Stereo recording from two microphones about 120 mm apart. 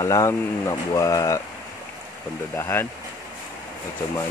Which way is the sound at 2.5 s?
20° left (ahead or behind).